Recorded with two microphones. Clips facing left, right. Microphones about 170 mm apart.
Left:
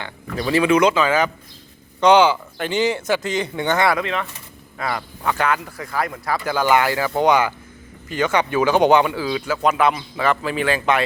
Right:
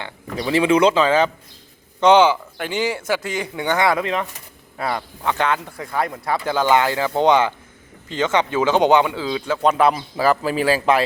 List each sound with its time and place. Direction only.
0.0 s speech: 20° right (ahead or behind)
4.8 s speech: 25° right (ahead or behind)
9.6 s a man's voice: 35° right (ahead or behind)